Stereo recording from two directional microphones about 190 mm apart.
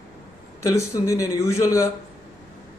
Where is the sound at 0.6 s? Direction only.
15° left (ahead or behind).